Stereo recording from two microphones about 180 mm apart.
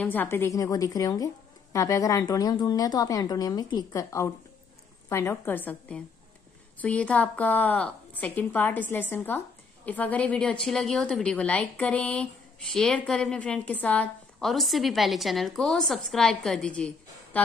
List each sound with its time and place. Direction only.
0.0 s a woman's voice: 10° left (ahead or behind)